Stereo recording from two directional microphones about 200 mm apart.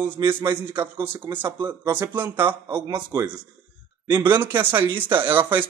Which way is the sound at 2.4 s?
25° right (ahead or behind).